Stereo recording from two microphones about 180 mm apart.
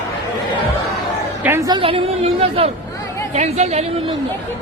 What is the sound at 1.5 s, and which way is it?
A woman's voice, 20° right (ahead or behind).